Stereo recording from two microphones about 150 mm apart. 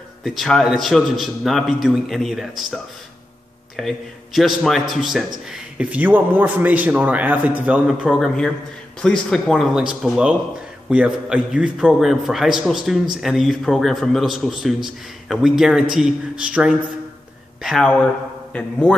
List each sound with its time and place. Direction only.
0.2 s a man's voice: centre (ahead or behind)